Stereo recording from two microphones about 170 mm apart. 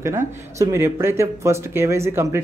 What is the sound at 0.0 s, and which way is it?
Speech, 15° right (ahead or behind).